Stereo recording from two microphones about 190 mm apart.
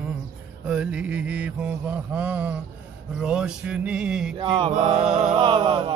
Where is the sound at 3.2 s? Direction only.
5° right (ahead or behind).